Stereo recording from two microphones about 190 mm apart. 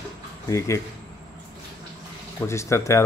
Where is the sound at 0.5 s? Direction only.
15° left (ahead or behind).